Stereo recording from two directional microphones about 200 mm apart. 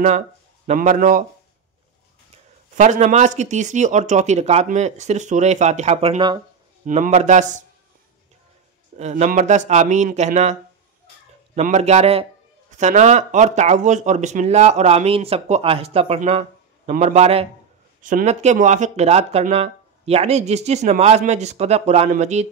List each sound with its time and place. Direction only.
0.7 s speech: 40° right (ahead or behind)
2.8 s speech: 35° right (ahead or behind)
6.9 s speech: 35° right (ahead or behind)
8.9 s speech: 35° right (ahead or behind)